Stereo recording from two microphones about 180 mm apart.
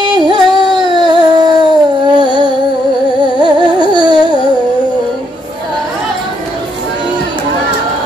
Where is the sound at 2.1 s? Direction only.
25° right (ahead or behind).